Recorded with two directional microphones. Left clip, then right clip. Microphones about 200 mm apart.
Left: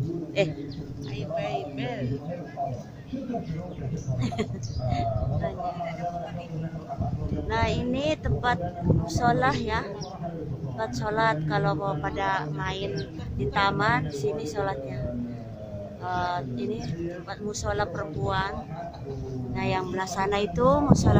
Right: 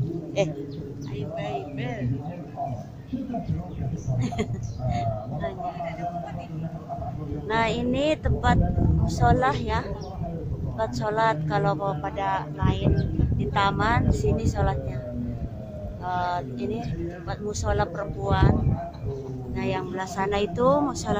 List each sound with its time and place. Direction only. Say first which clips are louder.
1.3 s a sound: left 2 dB; 20° left (ahead or behind)
4.2 s speech: right 1 dB; centre (ahead or behind)
7.4 s speech: right 3 dB; 5° right (ahead or behind)
16.1 s speech: right 2 dB; 10° right (ahead or behind)